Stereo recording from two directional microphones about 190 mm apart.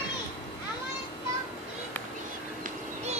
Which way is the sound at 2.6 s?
35° right (ahead or behind).